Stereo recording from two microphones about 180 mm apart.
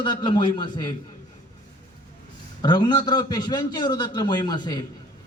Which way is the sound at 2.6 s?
25° left (ahead or behind).